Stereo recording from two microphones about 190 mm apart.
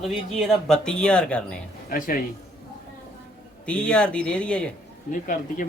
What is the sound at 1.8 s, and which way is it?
Speech, 45° left (ahead or behind).